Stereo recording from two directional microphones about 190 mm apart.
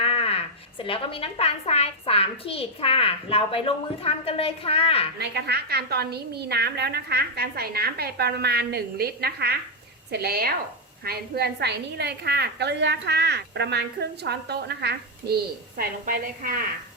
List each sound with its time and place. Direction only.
0.0 s speech: 30° left (ahead or behind)
5.2 s a woman's voice: 60° right (ahead or behind)
15.8 s a woman's voice: 50° right (ahead or behind)